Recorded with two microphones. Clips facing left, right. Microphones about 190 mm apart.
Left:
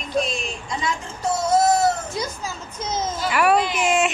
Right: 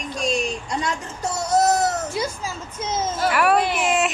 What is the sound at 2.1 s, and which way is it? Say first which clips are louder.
A woman's voice: right 2 dB; 10° right (ahead or behind).